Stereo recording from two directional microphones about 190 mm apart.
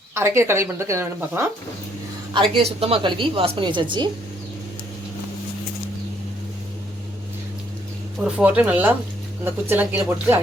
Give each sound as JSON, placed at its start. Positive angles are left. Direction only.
{"t": 0.1, "sound": "speech", "side_deg": -15}
{"t": 2.3, "sound": "a woman's voice", "side_deg": -25}
{"t": 8.2, "sound": "speech", "side_deg": -5}